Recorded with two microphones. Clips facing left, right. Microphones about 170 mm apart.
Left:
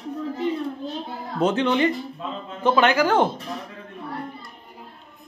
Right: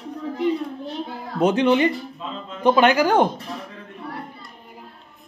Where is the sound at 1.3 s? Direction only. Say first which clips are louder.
Right 3 dB; 15° right (ahead or behind).